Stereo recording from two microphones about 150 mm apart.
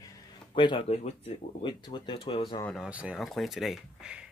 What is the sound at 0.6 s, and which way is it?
Speech, 35° left (ahead or behind).